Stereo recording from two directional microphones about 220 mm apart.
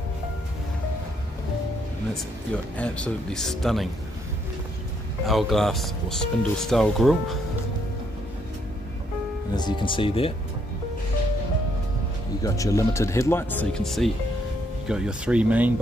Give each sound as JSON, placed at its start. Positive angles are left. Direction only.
{"t": 2.5, "sound": "speech", "side_deg": 5}
{"t": 5.2, "sound": "speech", "side_deg": 0}
{"t": 9.6, "sound": "speech", "side_deg": 20}
{"t": 12.4, "sound": "speech", "side_deg": 15}